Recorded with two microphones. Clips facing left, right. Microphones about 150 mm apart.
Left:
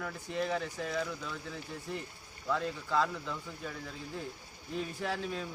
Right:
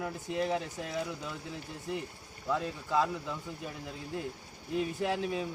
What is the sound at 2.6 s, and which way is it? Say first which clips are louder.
A man's voice: right 1 dB; 15° right (ahead or behind).